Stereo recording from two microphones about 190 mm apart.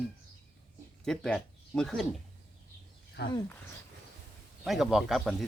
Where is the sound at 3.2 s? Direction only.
60° left (ahead or behind).